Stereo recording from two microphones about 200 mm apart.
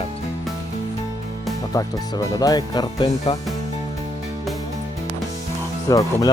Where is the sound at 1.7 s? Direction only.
15° left (ahead or behind).